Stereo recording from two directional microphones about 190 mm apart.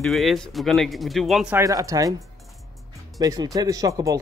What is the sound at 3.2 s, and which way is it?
Speech, 20° right (ahead or behind).